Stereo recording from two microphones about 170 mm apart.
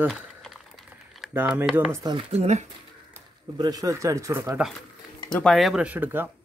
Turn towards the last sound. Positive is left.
turn(degrees=-10)  # may be behind; listen again after turning